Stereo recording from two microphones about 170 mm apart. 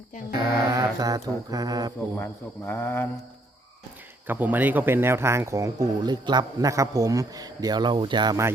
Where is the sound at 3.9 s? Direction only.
10° right (ahead or behind).